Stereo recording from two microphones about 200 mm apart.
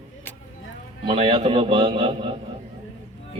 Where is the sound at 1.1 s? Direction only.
25° right (ahead or behind).